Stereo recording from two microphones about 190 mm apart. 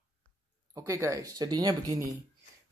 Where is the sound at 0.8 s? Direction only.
15° right (ahead or behind).